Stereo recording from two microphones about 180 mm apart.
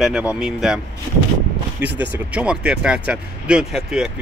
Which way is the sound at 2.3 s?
5° right (ahead or behind).